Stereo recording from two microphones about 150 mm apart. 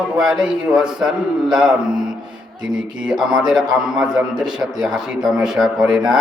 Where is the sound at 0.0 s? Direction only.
5° right (ahead or behind).